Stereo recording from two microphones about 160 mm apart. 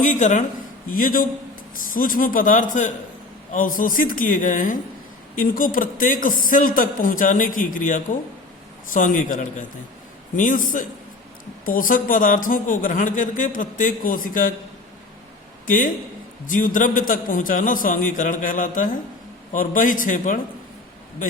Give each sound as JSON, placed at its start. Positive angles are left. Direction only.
{"t": 0.0, "sound": "speech", "side_deg": 50}
{"t": 0.9, "sound": "a man's voice", "side_deg": 60}
{"t": 15.6, "sound": "a man's voice", "side_deg": 60}